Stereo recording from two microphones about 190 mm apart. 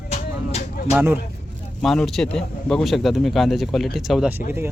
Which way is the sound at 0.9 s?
10° right (ahead or behind).